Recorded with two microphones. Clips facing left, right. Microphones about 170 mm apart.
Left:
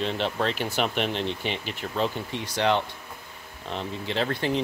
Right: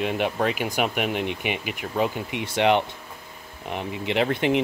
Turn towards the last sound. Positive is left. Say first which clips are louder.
# right 4 dB
turn(degrees=-20)  # may be behind; listen again after turning